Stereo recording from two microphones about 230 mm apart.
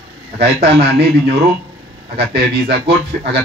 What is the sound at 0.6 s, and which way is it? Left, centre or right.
A man's voice, right.